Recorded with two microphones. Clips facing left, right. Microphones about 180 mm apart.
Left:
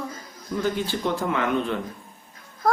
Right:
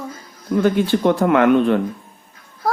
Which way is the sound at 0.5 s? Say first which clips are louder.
Right 9 dB; 65° right (ahead or behind).